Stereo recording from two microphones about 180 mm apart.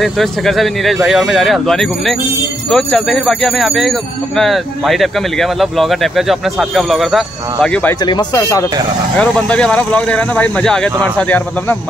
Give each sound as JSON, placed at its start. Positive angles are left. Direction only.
{"t": 0.0, "sound": "speech", "side_deg": 0}
{"t": 8.4, "sound": "speech", "side_deg": 15}
{"t": 9.2, "sound": "speech", "side_deg": 5}